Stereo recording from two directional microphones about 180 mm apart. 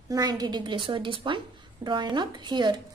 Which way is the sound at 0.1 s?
20° right (ahead or behind).